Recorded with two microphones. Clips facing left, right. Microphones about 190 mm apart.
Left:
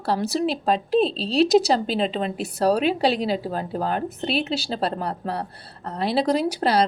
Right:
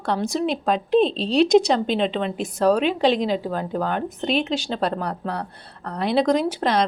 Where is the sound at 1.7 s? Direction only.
35° left (ahead or behind).